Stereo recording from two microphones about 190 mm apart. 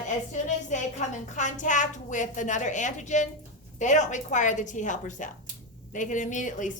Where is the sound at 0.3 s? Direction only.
40° left (ahead or behind).